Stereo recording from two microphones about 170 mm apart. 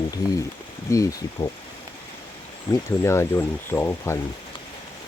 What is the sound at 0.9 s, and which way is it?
Speech, 15° left (ahead or behind).